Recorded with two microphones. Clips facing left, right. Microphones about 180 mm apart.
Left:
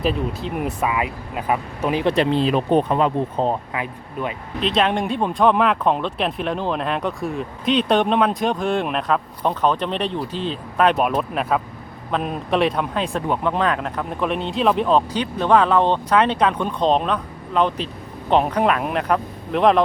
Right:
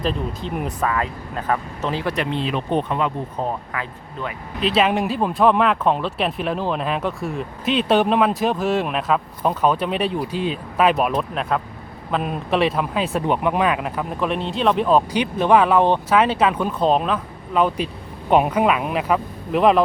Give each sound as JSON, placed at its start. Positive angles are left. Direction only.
{"t": 0.0, "sound": "speech", "side_deg": 5}
{"t": 2.1, "sound": "speech", "side_deg": 35}
{"t": 4.6, "sound": "speech", "side_deg": -5}
{"t": 13.2, "sound": "speech", "side_deg": -15}